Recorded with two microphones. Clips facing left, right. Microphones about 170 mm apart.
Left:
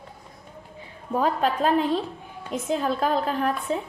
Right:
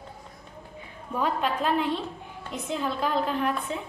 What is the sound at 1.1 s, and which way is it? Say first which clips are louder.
A woman's voice: left 4 dB; 40° left (ahead or behind).